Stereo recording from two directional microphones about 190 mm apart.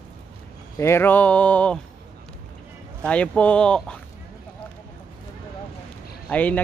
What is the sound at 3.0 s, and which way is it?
Speech, 5° left (ahead or behind).